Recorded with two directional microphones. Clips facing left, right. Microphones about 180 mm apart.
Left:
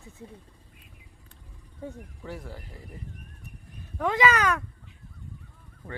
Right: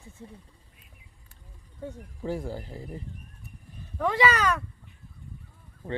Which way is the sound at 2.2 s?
30° right (ahead or behind).